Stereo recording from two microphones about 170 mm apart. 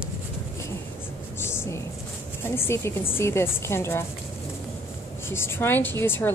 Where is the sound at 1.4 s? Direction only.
15° left (ahead or behind).